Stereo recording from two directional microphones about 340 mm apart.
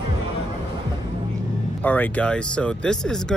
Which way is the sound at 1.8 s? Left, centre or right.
Centre.